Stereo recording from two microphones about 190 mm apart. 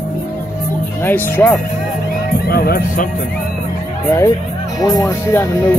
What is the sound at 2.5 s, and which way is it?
Speech, 50° left (ahead or behind).